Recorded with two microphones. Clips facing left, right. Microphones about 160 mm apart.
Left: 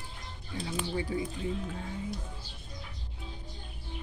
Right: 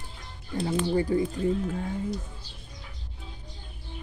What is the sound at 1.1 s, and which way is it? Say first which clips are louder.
Speech: right 8 dB; 55° right (ahead or behind).